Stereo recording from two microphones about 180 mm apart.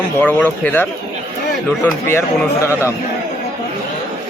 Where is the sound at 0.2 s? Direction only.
10° left (ahead or behind).